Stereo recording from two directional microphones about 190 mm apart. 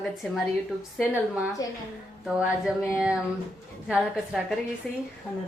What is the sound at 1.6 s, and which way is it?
Speech, 20° left (ahead or behind).